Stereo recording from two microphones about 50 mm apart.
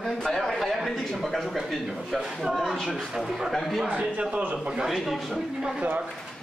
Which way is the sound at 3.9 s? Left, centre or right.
Right.